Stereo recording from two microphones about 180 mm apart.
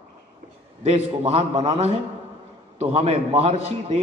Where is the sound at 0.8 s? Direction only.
35° right (ahead or behind).